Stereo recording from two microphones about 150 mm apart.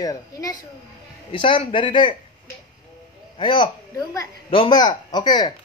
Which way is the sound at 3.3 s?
35° left (ahead or behind).